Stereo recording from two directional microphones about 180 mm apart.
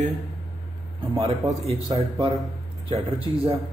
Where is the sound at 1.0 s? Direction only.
30° right (ahead or behind).